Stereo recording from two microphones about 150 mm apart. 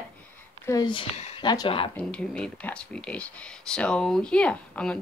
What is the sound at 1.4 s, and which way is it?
Speech, 30° left (ahead or behind).